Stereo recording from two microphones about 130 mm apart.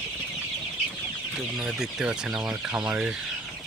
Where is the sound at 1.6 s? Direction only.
5° right (ahead or behind).